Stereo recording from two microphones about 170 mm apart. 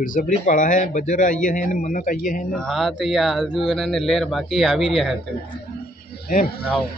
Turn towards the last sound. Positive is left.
turn(degrees=55)  # may be behind; listen again after turning